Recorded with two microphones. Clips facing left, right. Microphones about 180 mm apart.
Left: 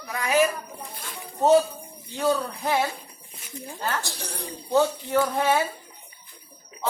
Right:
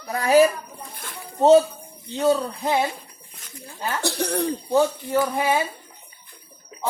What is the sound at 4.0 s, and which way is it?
Speech, 65° right (ahead or behind).